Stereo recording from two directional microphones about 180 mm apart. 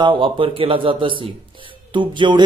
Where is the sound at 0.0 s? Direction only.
30° right (ahead or behind).